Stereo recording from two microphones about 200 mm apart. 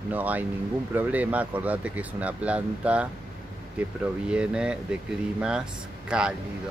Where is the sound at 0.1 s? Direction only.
10° right (ahead or behind).